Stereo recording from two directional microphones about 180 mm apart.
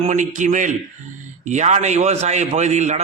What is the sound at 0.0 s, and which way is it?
A man's voice, 40° right (ahead or behind).